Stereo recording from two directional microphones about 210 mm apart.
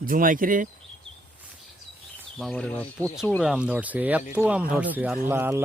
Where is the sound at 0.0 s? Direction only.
40° right (ahead or behind).